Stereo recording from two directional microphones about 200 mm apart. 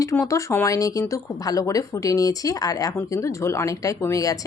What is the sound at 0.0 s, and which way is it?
Speech, 15° left (ahead or behind).